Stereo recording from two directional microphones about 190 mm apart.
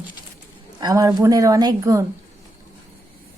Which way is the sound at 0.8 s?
20° right (ahead or behind).